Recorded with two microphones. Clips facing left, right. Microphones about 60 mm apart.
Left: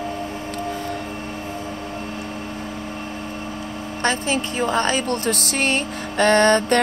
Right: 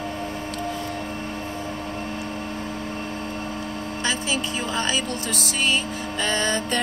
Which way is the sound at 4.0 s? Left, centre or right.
Left.